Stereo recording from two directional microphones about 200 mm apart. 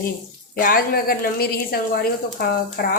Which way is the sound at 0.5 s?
45° left (ahead or behind).